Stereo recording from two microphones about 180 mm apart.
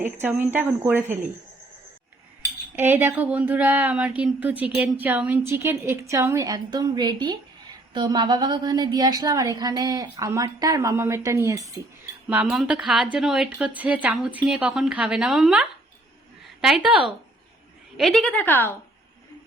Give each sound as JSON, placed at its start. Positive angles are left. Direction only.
{"t": 0.0, "sound": "a woman's voice", "side_deg": -10}
{"t": 2.7, "sound": "a woman's voice", "side_deg": -10}